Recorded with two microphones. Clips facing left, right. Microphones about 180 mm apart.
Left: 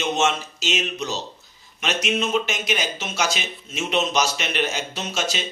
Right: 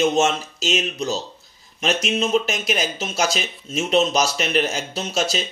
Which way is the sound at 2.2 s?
35° right (ahead or behind).